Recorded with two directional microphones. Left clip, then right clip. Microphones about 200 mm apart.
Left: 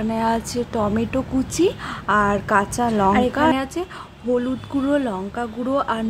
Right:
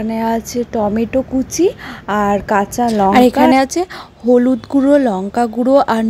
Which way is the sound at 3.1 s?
40° right (ahead or behind).